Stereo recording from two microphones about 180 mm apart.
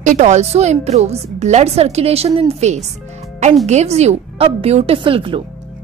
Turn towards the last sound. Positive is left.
turn(degrees=-30)  # may be behind; listen again after turning